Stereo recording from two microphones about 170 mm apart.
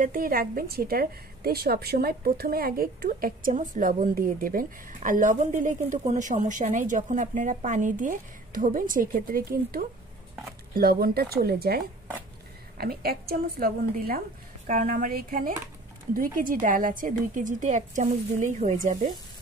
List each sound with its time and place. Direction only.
0.0 s a woman's voice: 55° right (ahead or behind)